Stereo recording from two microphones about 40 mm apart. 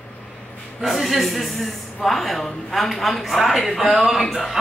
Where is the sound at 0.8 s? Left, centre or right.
Centre.